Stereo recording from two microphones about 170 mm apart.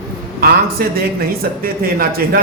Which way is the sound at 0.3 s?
60° right (ahead or behind).